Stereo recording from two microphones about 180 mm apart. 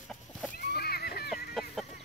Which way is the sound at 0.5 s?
60° left (ahead or behind).